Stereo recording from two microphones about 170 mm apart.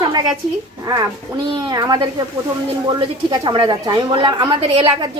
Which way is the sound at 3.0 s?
30° right (ahead or behind).